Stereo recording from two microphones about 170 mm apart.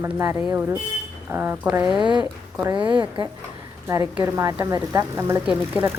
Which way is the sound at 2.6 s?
25° right (ahead or behind).